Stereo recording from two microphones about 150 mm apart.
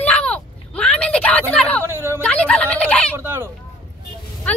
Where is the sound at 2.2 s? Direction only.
10° left (ahead or behind).